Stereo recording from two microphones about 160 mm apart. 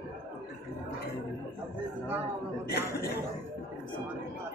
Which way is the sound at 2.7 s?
75° left (ahead or behind).